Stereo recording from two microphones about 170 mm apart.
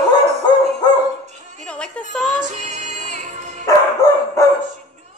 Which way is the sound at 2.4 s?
45° right (ahead or behind).